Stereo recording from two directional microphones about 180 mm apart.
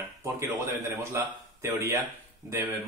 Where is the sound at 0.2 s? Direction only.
15° right (ahead or behind).